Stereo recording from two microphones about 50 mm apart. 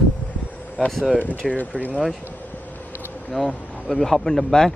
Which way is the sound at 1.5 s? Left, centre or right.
Left.